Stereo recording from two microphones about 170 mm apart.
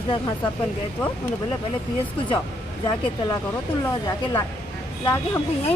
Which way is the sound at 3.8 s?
20° left (ahead or behind).